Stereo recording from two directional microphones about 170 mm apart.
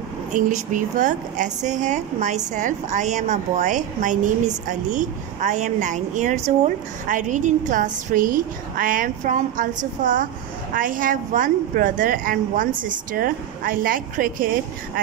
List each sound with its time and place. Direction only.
0.3 s a woman's voice: 45° right (ahead or behind)